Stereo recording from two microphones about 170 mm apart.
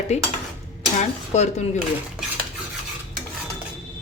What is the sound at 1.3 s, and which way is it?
Speech, 40° left (ahead or behind).